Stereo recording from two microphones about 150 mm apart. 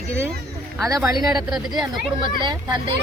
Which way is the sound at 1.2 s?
5° right (ahead or behind).